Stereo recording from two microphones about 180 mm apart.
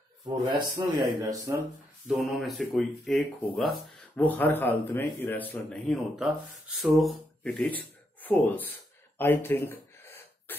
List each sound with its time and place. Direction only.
0.5 s speech: 25° right (ahead or behind)
2.0 s speech: centre (ahead or behind)
9.2 s gasp: 10° left (ahead or behind)